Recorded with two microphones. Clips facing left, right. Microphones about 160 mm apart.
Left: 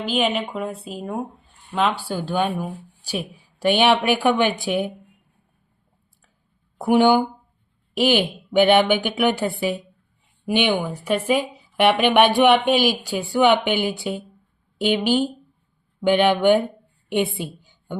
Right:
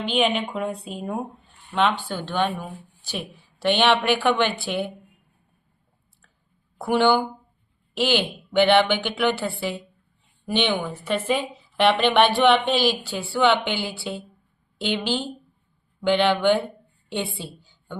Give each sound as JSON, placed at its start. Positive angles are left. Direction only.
{"t": 0.1, "sound": "a woman's voice", "side_deg": 0}
{"t": 6.7, "sound": "speech", "side_deg": 15}